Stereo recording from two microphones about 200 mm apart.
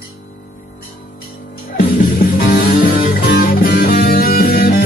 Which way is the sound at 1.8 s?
45° left (ahead or behind).